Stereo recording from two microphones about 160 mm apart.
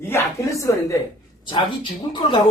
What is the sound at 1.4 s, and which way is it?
Speech, 30° left (ahead or behind).